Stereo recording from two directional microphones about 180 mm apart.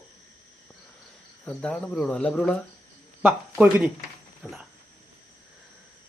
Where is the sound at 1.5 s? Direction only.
5° left (ahead or behind).